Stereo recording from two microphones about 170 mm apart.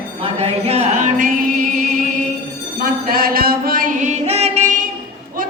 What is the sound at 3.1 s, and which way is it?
Chant, 60° right (ahead or behind).